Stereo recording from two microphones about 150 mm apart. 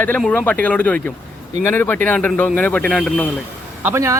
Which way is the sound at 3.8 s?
15° right (ahead or behind).